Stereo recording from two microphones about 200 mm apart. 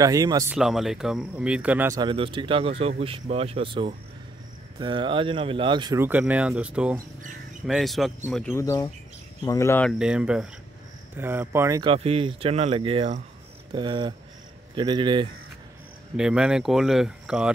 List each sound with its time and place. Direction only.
0.0 s speech: 20° right (ahead or behind)
0.6 s speech: centre (ahead or behind)
2.0 s speech: 25° right (ahead or behind); by 9.9 s 10° left (ahead or behind)
9.9 s speech: 5° right (ahead or behind)
11.8 s speech: 30° right (ahead or behind)
16.2 s speech: 5° right (ahead or behind)